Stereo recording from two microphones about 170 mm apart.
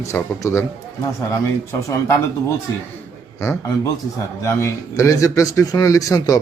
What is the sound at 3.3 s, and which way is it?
A man's voice, 15° left (ahead or behind).